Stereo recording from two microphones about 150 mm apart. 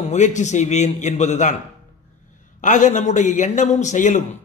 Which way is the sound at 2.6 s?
55° left (ahead or behind).